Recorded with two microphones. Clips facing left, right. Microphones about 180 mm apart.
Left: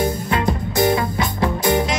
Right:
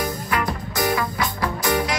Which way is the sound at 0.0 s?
25° left (ahead or behind).